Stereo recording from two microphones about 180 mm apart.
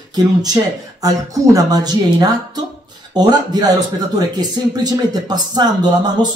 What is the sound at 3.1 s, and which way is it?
A man's voice, 20° right (ahead or behind).